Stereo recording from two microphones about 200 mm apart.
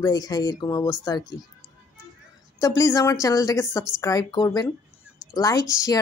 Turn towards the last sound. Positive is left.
turn(degrees=15)  # may be behind; listen again after turning